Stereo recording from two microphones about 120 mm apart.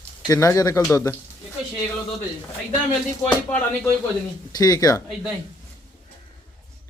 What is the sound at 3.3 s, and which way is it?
Speech, 10° left (ahead or behind).